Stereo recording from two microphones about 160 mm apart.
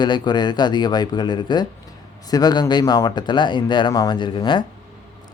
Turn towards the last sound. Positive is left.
turn(degrees=30)  # may be behind; listen again after turning